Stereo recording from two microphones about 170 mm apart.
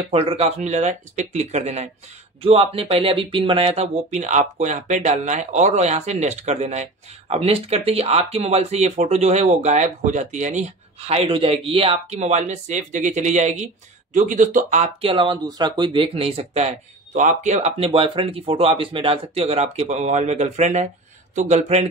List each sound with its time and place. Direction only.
0.1 s speech: 35° right (ahead or behind)